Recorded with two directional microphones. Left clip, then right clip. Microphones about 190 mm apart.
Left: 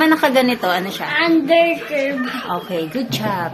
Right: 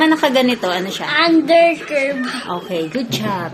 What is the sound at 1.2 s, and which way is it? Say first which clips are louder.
Speech: right 2 dB; 25° left (ahead or behind).